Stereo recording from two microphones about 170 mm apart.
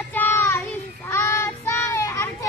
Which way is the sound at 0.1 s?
10° left (ahead or behind).